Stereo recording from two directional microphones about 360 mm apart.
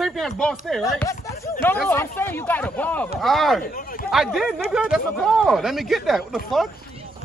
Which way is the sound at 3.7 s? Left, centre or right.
Left.